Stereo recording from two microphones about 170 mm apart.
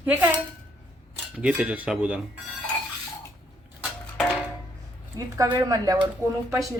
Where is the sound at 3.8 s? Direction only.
5° left (ahead or behind).